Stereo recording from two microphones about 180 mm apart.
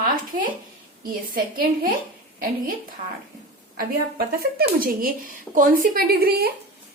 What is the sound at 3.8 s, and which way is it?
Speech, 55° right (ahead or behind).